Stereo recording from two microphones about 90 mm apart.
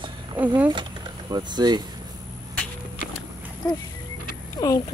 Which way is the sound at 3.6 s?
45° left (ahead or behind).